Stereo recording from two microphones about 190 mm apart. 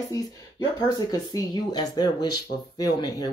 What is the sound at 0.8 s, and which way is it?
Speech, 20° left (ahead or behind).